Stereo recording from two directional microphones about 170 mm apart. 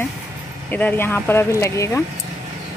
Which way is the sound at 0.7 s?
10° left (ahead or behind).